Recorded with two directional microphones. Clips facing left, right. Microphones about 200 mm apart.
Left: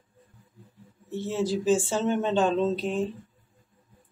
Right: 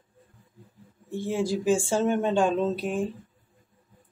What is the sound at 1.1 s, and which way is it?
Speech, 10° right (ahead or behind).